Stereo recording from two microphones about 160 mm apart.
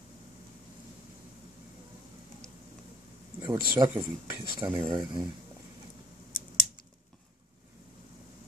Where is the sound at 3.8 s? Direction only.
25° right (ahead or behind).